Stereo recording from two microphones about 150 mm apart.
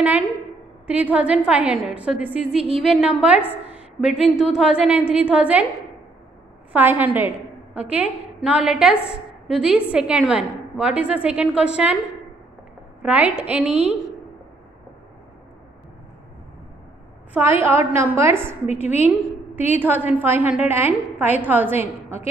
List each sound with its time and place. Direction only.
0.8 s a woman's voice: 10° right (ahead or behind)
6.7 s a woman's voice: 10° right (ahead or behind)
13.0 s a woman's voice: 10° right (ahead or behind)
17.3 s a woman's voice: 15° right (ahead or behind)
18.7 s a woman's voice: 45° left (ahead or behind)
18.9 s a woman's voice: 10° right (ahead or behind)